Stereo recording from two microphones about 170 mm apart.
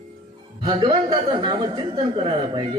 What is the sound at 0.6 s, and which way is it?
Speech, 30° right (ahead or behind).